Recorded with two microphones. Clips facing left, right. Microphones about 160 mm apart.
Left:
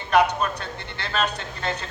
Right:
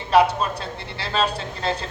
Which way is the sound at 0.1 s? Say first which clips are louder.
Right 2 dB; 30° right (ahead or behind).